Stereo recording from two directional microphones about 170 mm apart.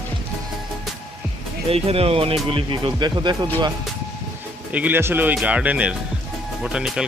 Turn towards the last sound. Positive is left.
turn(degrees=-5)  # may be behind; listen again after turning